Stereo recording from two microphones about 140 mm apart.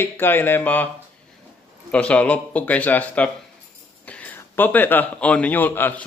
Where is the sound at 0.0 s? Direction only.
15° left (ahead or behind).